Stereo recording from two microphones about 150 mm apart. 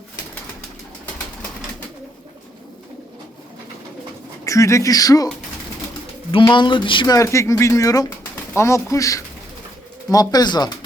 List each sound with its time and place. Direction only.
4.4 s speech: 20° left (ahead or behind)
6.5 s speech: 35° left (ahead or behind)